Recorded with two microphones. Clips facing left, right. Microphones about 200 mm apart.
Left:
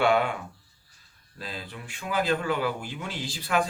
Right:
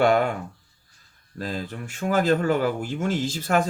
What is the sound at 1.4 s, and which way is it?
A man's voice, 45° right (ahead or behind).